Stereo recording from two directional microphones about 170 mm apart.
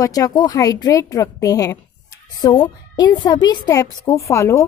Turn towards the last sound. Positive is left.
turn(degrees=15)  # may be behind; listen again after turning